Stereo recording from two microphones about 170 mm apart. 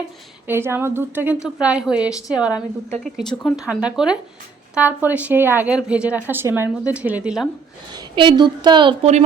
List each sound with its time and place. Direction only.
0.4 s speech: 15° right (ahead or behind)
7.9 s a woman's voice: 30° right (ahead or behind)